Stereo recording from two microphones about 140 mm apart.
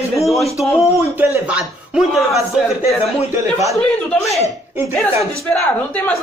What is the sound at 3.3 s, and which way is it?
Speech, 20° right (ahead or behind).